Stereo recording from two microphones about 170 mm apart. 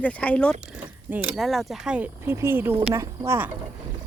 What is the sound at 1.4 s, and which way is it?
Speech, centre (ahead or behind).